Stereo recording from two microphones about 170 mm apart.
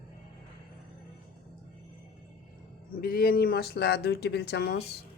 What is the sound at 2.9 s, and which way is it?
Speech, 60° left (ahead or behind).